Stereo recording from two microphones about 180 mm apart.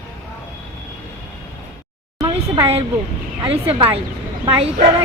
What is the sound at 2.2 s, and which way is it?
A woman's voice, 30° right (ahead or behind).